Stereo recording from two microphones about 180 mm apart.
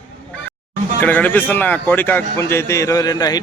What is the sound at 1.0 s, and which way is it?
A man's voice, 10° left (ahead or behind).